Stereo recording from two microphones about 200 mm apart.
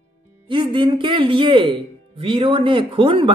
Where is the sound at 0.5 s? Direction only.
25° right (ahead or behind).